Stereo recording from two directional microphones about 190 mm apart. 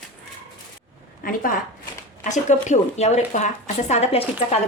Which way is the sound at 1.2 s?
45° left (ahead or behind).